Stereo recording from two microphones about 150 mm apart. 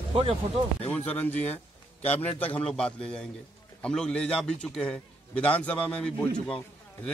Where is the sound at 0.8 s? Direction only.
10° left (ahead or behind).